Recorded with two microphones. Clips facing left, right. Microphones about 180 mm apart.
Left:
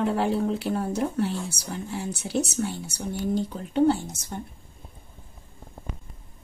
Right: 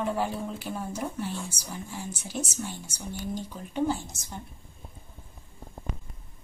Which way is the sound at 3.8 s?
65° left (ahead or behind).